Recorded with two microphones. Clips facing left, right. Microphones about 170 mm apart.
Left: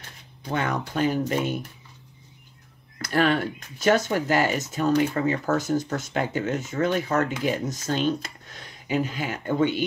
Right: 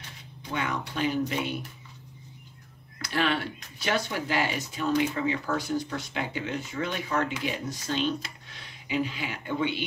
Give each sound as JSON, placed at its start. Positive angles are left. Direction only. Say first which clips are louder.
{"t": 0.5, "sound": "speech", "louder": "left 5 dB", "side_deg": 45}
{"t": 3.0, "sound": "speech", "louder": "left 5 dB", "side_deg": 45}